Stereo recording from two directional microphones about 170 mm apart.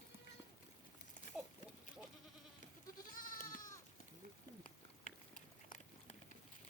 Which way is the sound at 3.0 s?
55° left (ahead or behind).